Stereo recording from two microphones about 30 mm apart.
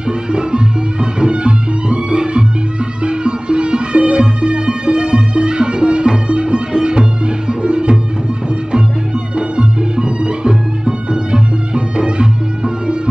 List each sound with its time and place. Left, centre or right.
0.3 s music: right
9.6 s music: right